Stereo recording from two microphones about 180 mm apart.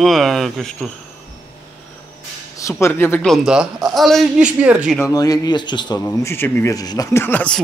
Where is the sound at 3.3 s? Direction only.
5° right (ahead or behind).